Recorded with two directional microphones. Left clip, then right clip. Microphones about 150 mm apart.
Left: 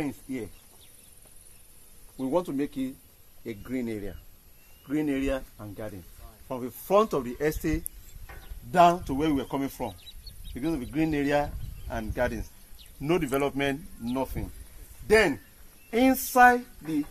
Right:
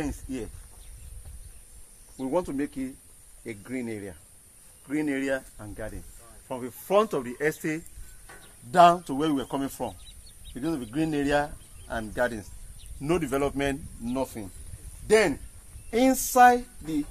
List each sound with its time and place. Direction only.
0.0 s speech: 20° left (ahead or behind)
2.1 s a man's voice: 55° left (ahead or behind)
8.7 s speech: 25° left (ahead or behind)
9.4 s speech: 10° left (ahead or behind)
15.9 s speech: 15° right (ahead or behind)
16.3 s speech: centre (ahead or behind)